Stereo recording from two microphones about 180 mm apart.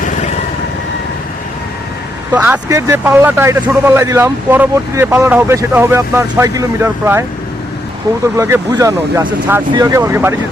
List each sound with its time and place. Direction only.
2.3 s speech: 10° right (ahead or behind)
8.4 s speech: 15° right (ahead or behind)